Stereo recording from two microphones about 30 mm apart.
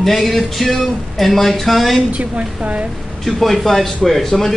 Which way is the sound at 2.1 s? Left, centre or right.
Right.